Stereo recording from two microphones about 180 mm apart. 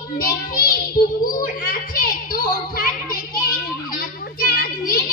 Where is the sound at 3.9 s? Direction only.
55° left (ahead or behind).